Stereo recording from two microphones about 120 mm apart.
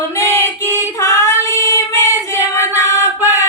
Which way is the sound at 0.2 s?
25° left (ahead or behind).